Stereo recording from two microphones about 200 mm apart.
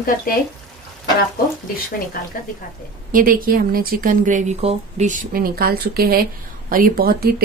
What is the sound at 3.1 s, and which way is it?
Speech, 45° right (ahead or behind).